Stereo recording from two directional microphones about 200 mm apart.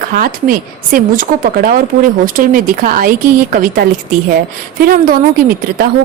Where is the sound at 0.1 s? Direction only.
45° right (ahead or behind).